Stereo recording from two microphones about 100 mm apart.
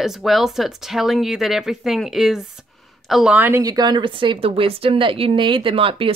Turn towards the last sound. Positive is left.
turn(degrees=-65)  # may be behind; listen again after turning